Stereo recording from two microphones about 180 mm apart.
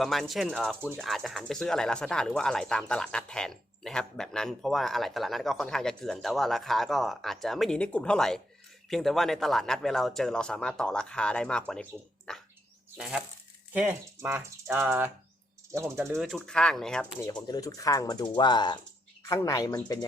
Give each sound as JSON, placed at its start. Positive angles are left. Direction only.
{"t": 0.0, "sound": "speech", "side_deg": 0}
{"t": 0.8, "sound": "speech", "side_deg": -10}
{"t": 1.0, "sound": "speech", "side_deg": 0}
{"t": 16.1, "sound": "speech", "side_deg": 5}
{"t": 17.4, "sound": "speech", "side_deg": 20}